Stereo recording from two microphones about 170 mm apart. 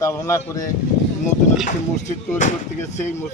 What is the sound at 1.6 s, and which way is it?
Speech, 45° left (ahead or behind).